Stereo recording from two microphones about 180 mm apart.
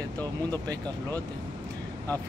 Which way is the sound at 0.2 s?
10° left (ahead or behind).